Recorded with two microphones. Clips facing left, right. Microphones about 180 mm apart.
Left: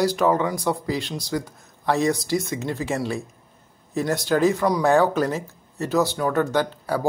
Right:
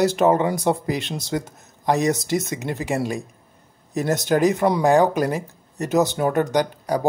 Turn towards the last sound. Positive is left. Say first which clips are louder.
# right 2 dB
turn(degrees=-15)  # may be behind; listen again after turning